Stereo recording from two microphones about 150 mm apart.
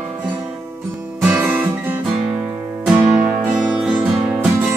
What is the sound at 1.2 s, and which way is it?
Guitar, 10° right (ahead or behind).